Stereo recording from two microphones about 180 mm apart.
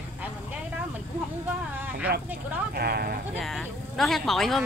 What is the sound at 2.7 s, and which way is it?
Speech, 60° right (ahead or behind).